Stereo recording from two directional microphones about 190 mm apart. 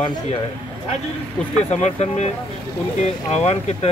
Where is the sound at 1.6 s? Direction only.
35° left (ahead or behind).